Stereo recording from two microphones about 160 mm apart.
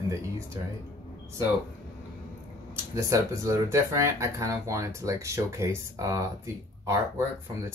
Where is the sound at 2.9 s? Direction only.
20° right (ahead or behind).